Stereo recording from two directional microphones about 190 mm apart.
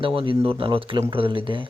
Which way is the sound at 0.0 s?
30° right (ahead or behind).